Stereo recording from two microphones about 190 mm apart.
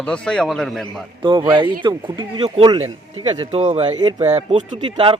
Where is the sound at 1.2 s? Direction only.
20° right (ahead or behind).